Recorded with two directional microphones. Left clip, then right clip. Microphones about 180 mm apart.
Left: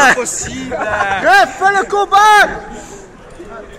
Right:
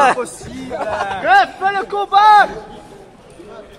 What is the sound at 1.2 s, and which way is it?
A man's voice, 45° left (ahead or behind).